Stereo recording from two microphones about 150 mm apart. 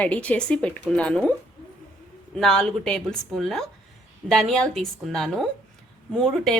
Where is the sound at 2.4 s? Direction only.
5° left (ahead or behind).